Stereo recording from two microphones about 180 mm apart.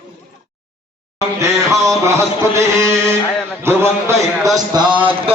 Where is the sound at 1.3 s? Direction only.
15° right (ahead or behind).